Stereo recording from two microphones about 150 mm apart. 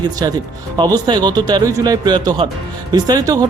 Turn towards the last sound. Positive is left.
turn(degrees=-25)  # may be behind; listen again after turning